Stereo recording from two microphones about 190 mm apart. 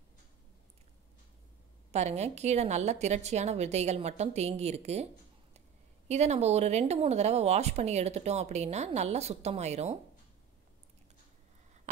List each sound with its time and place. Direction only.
1.9 s speech: 35° right (ahead or behind)
6.0 s speech: 35° right (ahead or behind)